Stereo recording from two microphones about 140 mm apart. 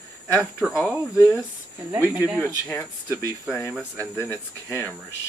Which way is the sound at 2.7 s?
10° left (ahead or behind).